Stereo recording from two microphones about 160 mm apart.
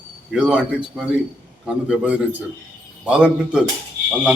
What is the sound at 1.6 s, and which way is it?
A man's voice, 5° right (ahead or behind).